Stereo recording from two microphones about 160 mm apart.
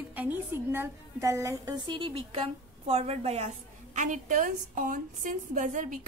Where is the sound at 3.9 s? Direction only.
50° right (ahead or behind).